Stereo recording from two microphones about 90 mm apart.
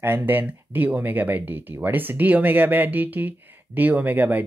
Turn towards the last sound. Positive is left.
turn(degrees=-20)  # may be behind; listen again after turning